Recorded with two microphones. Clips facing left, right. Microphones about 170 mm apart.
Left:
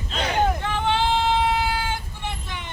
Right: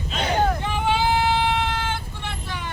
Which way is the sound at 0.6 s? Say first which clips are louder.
Right 1 dB; 10° right (ahead or behind).